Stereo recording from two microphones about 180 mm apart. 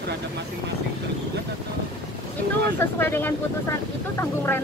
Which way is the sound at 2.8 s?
10° left (ahead or behind).